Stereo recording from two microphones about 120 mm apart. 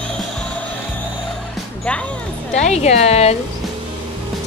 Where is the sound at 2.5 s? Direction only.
65° left (ahead or behind).